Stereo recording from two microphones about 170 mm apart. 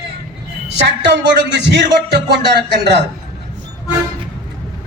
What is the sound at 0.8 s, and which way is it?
Speech, 90° right.